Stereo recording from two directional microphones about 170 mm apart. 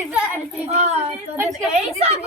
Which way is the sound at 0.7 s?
40° right (ahead or behind).